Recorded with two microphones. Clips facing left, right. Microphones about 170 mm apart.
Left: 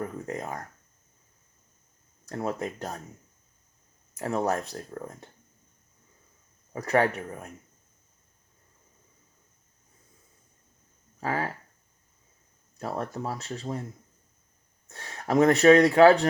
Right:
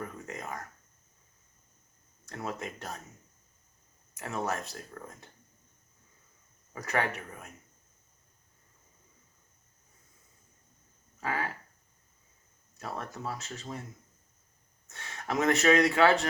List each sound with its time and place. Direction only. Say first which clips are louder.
0.0 s speech: left 6 dB; 35° left (ahead or behind)
2.3 s speech: left 7 dB; 35° left (ahead or behind)
4.2 s speech: left 7 dB; 35° left (ahead or behind)
6.7 s speech: left 7 dB; 35° left (ahead or behind)
11.2 s speech: left 4 dB; 35° left (ahead or behind)
12.8 s speech: left 6 dB; 35° left (ahead or behind)
14.8 s speech: left 6 dB; 35° left (ahead or behind)